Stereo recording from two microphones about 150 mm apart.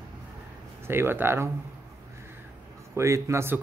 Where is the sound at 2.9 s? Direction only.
20° right (ahead or behind).